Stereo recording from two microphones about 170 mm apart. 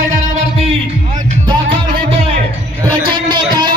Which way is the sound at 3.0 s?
25° right (ahead or behind).